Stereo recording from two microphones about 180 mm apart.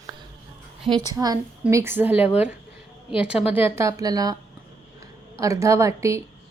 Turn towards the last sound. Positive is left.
turn(degrees=-15)  # may be behind; listen again after turning